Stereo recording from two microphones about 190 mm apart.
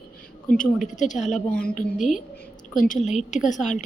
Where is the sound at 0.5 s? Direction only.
45° left (ahead or behind).